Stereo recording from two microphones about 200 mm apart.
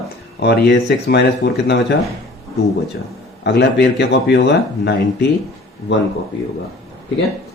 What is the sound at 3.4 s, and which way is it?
Speech, 55° left (ahead or behind).